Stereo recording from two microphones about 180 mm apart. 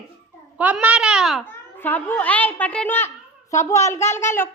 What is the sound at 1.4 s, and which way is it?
A child's voice, 10° left (ahead or behind).